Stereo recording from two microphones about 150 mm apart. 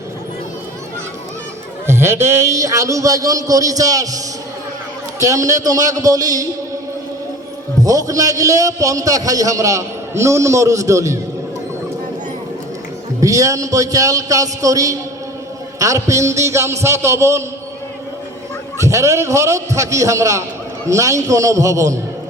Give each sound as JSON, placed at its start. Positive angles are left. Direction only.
{"t": 1.9, "sound": "a man's voice", "side_deg": -15}
{"t": 5.2, "sound": "a man's voice", "side_deg": -20}
{"t": 7.9, "sound": "a man's voice", "side_deg": -25}
{"t": 13.2, "sound": "a man's voice", "side_deg": -20}
{"t": 18.8, "sound": "a man's voice", "side_deg": -20}